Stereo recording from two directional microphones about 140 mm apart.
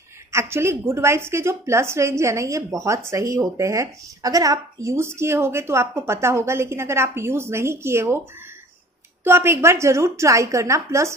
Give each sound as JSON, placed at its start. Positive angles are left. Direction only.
{"t": 0.3, "sound": "a woman's voice", "side_deg": -20}
{"t": 9.2, "sound": "a woman's voice", "side_deg": -15}